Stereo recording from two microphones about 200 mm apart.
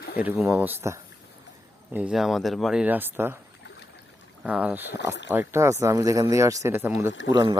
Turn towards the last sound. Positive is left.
turn(degrees=-20)  # may be behind; listen again after turning